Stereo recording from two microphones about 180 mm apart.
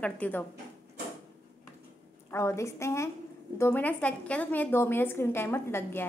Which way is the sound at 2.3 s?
15° left (ahead or behind).